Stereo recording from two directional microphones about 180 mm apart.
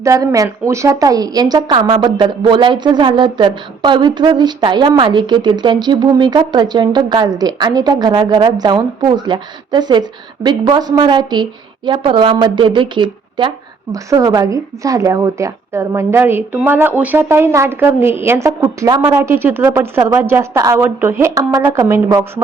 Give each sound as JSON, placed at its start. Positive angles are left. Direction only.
{"t": 0.0, "sound": "a woman's voice", "side_deg": -15}